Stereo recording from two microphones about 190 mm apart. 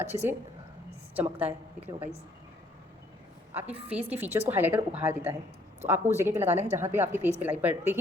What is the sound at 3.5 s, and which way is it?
A man's voice, 10° right (ahead or behind).